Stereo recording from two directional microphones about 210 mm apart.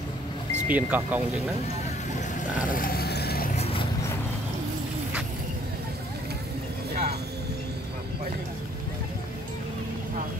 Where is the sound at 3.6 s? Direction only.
25° left (ahead or behind).